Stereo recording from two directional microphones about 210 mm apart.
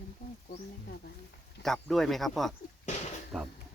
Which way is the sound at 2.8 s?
35° left (ahead or behind).